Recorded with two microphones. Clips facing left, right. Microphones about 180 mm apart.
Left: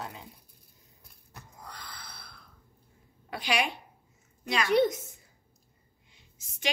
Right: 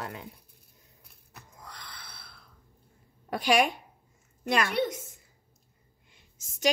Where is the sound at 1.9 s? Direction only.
45° left (ahead or behind).